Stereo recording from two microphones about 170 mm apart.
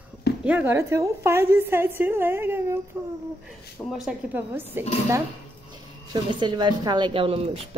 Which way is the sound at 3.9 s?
5° right (ahead or behind).